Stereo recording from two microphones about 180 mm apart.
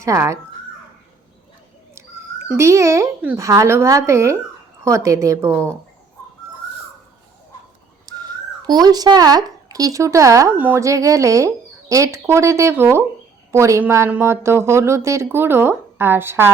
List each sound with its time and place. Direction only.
0.0 s speech: 15° right (ahead or behind)
2.5 s speech: 15° right (ahead or behind)
8.0 s speech: 20° right (ahead or behind)